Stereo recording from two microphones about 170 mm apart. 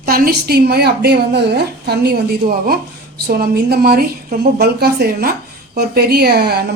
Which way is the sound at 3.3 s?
60° right (ahead or behind).